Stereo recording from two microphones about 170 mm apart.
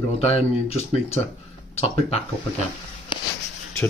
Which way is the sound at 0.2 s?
40° left (ahead or behind).